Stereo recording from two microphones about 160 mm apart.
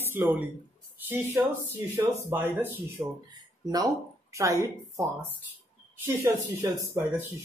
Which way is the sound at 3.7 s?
20° right (ahead or behind).